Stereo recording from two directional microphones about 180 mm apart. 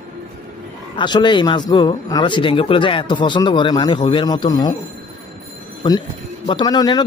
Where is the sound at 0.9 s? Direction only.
25° left (ahead or behind).